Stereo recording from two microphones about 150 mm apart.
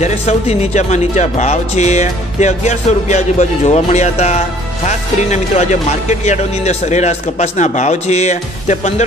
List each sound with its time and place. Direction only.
0.0 s speech: 45° left (ahead or behind)